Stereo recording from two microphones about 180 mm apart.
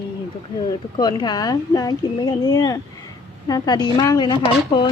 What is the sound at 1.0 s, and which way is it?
Speech, 25° left (ahead or behind).